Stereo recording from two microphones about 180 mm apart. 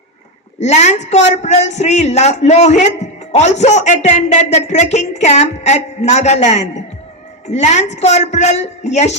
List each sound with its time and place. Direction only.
0.6 s a man's voice: 40° left (ahead or behind)